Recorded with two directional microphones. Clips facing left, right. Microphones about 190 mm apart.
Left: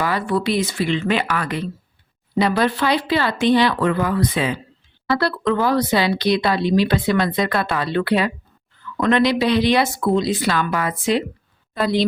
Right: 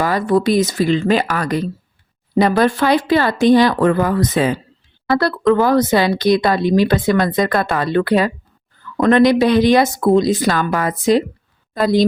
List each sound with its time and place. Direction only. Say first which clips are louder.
0.0 s speech: right 5 dB; 40° right (ahead or behind)